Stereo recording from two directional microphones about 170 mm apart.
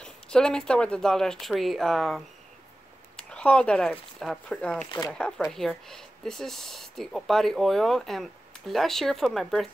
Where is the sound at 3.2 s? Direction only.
5° left (ahead or behind).